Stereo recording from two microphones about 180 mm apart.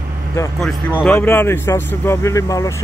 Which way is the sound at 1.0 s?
10° left (ahead or behind).